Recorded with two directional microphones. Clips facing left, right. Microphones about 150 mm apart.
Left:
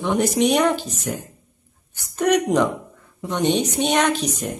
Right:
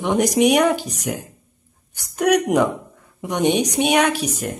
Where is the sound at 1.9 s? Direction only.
10° right (ahead or behind).